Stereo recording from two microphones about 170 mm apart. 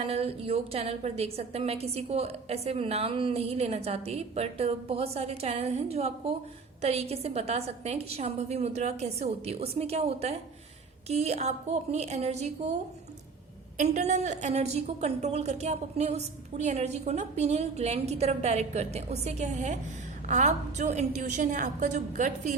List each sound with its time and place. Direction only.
0.1 s a woman's voice: 35° right (ahead or behind)
13.7 s a woman's voice: 45° right (ahead or behind)